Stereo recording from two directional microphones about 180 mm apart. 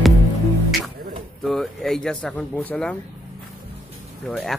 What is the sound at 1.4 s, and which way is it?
Speech, centre (ahead or behind).